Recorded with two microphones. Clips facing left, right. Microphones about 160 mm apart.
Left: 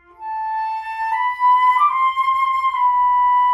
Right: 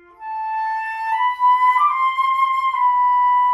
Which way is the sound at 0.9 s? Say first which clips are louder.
Even; 20° right (ahead or behind).